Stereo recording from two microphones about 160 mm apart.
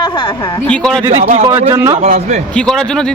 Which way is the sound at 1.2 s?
40° right (ahead or behind).